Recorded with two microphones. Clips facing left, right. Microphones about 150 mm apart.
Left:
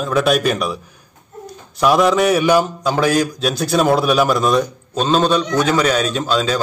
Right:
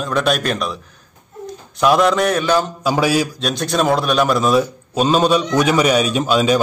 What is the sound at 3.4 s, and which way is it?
A man's voice, centre (ahead or behind).